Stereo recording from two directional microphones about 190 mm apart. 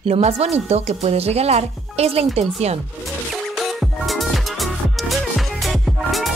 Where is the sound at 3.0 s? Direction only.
Centre (ahead or behind).